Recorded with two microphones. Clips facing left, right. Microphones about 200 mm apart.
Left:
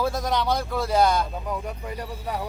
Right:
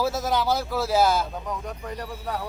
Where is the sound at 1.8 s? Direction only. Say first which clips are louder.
Even; 10° left (ahead or behind).